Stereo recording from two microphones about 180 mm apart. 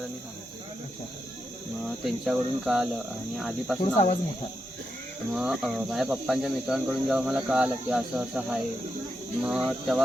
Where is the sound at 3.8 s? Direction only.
40° left (ahead or behind).